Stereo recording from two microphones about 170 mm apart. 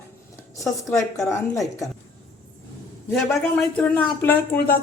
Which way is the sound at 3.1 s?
Centre (ahead or behind).